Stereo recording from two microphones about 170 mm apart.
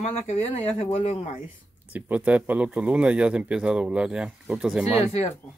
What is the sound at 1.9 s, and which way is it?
Speech, 10° right (ahead or behind).